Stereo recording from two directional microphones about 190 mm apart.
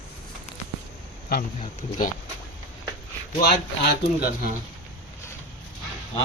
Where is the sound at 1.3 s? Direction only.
50° left (ahead or behind).